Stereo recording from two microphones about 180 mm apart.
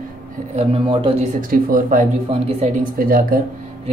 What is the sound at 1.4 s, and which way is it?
Speech, 50° right (ahead or behind).